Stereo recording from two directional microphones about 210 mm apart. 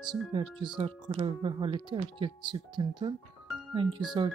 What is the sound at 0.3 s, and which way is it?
Speech, 25° right (ahead or behind).